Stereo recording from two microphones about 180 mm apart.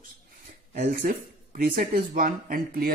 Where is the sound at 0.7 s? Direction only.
55° right (ahead or behind).